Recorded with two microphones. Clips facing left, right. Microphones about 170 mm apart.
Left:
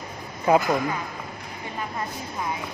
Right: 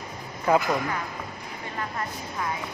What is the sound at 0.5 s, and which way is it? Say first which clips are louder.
Speech: left 2 dB; 20° left (ahead or behind).